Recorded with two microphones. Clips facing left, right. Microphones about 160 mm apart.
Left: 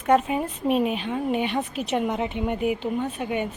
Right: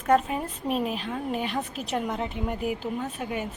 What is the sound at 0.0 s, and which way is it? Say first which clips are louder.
A woman's voice: left 2 dB; 5° left (ahead or behind).